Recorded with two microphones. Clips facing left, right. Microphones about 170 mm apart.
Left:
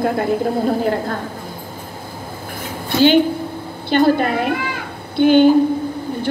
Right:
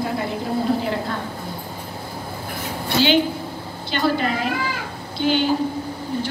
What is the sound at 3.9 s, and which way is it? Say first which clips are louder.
A woman's voice: left 7 dB; 55° left (ahead or behind).